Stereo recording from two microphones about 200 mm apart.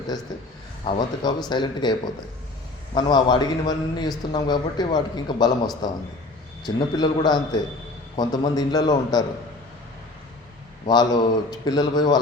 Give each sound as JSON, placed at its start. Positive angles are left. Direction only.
{"t": 0.9, "sound": "a man's voice", "side_deg": 20}
{"t": 10.8, "sound": "a man's voice", "side_deg": 20}